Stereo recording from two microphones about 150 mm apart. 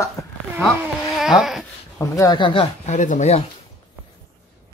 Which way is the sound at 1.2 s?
5° right (ahead or behind).